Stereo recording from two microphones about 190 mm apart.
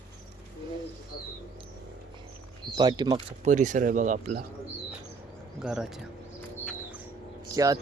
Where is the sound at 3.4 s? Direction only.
40° right (ahead or behind).